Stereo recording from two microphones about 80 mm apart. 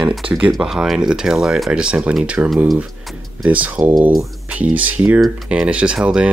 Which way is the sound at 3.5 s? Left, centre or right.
Centre.